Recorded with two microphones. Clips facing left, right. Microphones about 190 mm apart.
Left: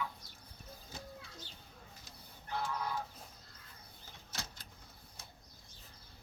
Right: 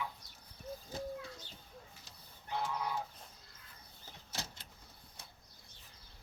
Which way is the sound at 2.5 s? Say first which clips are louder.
Right 1 dB; 20° right (ahead or behind).